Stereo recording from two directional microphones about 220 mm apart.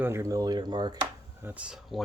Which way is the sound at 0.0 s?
10° right (ahead or behind).